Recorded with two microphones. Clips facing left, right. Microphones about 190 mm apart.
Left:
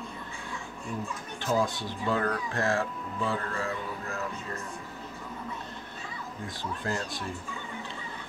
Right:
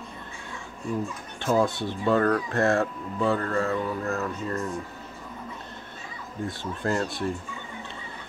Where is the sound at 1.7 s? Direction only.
60° right (ahead or behind).